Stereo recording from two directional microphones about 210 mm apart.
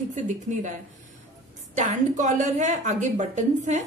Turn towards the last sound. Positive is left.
turn(degrees=-35)  # may be behind; listen again after turning